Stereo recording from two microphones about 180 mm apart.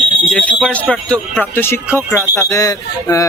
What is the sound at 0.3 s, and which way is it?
Speech, 5° left (ahead or behind).